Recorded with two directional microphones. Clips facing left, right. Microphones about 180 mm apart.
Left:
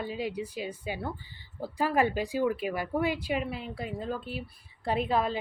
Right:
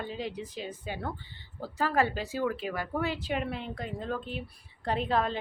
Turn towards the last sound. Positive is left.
turn(degrees=10)  # may be behind; listen again after turning